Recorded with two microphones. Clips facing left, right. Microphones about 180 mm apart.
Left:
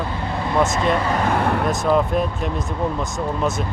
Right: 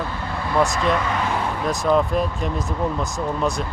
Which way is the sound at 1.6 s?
Centre (ahead or behind).